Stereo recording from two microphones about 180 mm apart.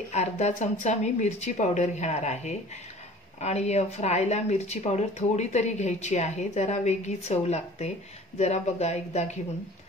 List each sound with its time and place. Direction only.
0.1 s speech: 40° left (ahead or behind)